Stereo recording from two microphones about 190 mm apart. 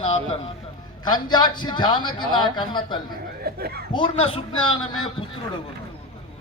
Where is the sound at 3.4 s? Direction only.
55° right (ahead or behind).